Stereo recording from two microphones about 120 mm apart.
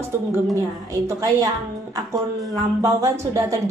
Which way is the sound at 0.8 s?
30° right (ahead or behind).